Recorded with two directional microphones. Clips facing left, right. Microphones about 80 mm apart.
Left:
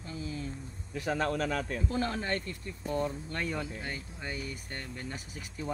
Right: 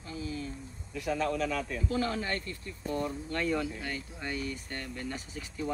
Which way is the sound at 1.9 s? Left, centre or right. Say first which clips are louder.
Right 1 dB; left.